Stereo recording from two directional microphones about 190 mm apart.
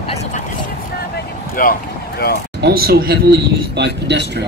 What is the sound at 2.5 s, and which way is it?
A man's voice, 55° right (ahead or behind).